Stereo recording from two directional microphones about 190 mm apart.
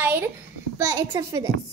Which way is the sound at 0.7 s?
15° right (ahead or behind).